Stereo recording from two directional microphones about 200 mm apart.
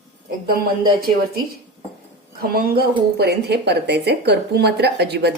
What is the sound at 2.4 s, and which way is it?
Speech, 50° right (ahead or behind).